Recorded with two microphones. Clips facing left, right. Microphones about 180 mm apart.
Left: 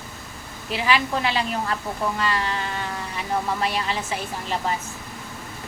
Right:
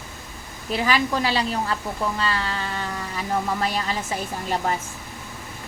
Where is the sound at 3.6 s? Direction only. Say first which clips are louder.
Even; 40° right (ahead or behind).